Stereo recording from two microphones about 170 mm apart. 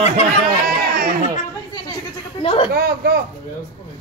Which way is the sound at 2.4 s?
35° left (ahead or behind).